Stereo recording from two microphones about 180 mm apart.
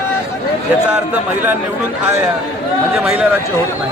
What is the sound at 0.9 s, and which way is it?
Speech, 5° right (ahead or behind).